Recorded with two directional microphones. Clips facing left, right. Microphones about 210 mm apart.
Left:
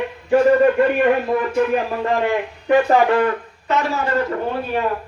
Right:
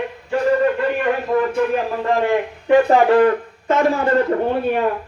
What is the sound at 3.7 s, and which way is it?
Speech, 50° right (ahead or behind).